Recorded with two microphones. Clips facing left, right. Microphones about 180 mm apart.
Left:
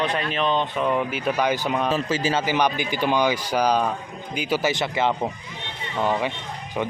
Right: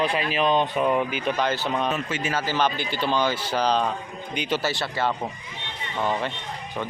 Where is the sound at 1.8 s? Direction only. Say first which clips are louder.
Left 4 dB; 35° left (ahead or behind).